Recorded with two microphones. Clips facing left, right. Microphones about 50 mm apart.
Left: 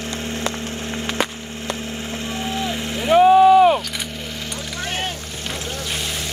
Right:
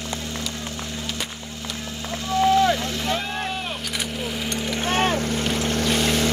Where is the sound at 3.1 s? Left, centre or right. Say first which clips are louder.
Left 17 dB; left.